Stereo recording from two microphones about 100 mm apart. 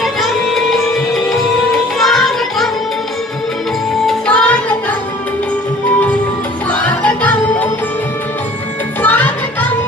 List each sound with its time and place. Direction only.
0.0 s music: centre (ahead or behind)
2.0 s child singing: centre (ahead or behind)
4.0 s music: 5° left (ahead or behind)
6.7 s music: 15° left (ahead or behind)
9.0 s music: 15° left (ahead or behind)